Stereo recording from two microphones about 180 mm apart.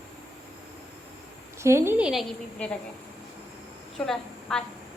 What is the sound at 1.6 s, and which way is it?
Speech, 15° right (ahead or behind).